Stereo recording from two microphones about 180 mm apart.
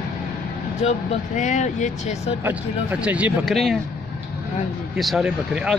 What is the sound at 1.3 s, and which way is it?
Speech, 40° left (ahead or behind).